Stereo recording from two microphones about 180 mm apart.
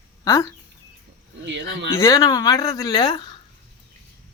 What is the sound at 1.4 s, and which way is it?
Speech, 80° right.